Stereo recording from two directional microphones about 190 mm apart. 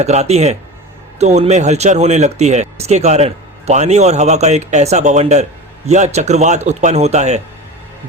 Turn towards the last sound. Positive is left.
turn(degrees=-35)  # may be behind; listen again after turning